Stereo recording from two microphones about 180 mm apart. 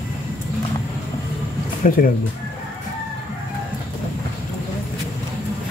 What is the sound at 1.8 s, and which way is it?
Speech, 50° left (ahead or behind).